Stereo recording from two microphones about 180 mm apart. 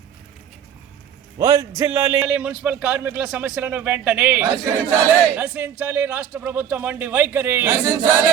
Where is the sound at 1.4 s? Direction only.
20° right (ahead or behind).